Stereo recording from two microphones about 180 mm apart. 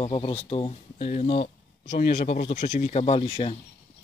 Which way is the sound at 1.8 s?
70° left (ahead or behind).